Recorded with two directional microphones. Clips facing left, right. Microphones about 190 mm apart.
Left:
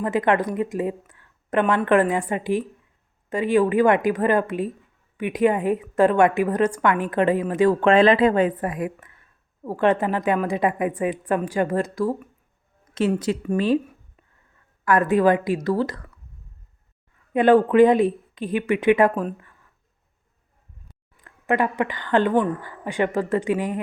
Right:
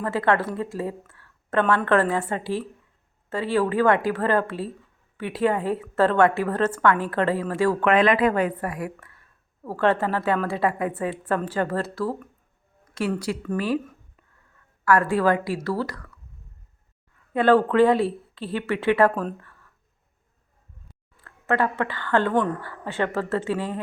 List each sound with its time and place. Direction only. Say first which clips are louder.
0.0 s a woman's voice: left 2 dB; 15° left (ahead or behind)
14.8 s a woman's voice: left 2 dB; 20° left (ahead or behind)
17.3 s speech: left 3 dB; 15° left (ahead or behind)
21.2 s a woman's voice: left 1 dB; 15° left (ahead or behind)